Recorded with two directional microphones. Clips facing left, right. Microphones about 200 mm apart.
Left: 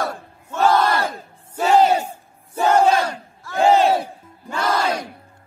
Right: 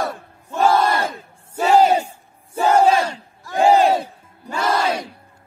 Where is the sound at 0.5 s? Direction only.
10° right (ahead or behind).